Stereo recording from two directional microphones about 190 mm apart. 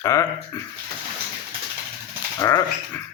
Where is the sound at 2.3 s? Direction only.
15° left (ahead or behind).